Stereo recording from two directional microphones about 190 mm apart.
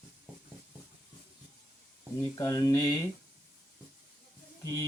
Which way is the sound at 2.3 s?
20° left (ahead or behind).